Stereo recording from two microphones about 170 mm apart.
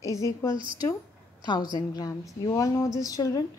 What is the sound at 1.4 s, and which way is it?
A woman's voice, 25° left (ahead or behind).